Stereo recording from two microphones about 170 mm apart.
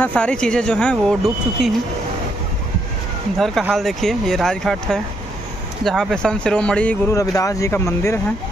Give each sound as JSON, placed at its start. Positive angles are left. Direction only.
{"t": 0.0, "sound": "speech", "side_deg": 5}
{"t": 3.3, "sound": "speech", "side_deg": 0}
{"t": 7.2, "sound": "speech", "side_deg": 20}